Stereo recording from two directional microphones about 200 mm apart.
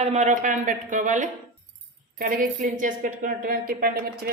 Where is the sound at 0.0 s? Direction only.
35° right (ahead or behind).